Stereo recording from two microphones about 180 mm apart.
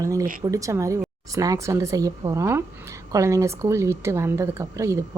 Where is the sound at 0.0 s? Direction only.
20° right (ahead or behind).